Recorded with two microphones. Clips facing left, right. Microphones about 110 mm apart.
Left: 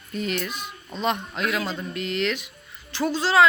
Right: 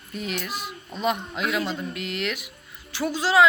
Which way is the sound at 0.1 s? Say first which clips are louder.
Left 3 dB; 5° right (ahead or behind).